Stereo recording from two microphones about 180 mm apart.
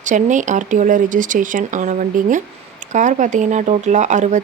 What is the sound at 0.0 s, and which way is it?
Speech, 45° right (ahead or behind).